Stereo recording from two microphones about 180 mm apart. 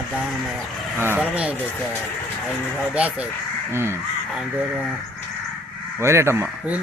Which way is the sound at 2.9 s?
10° right (ahead or behind).